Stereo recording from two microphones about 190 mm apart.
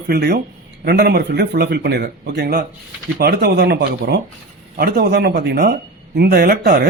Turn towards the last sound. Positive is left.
turn(degrees=-55)  # may be behind; listen again after turning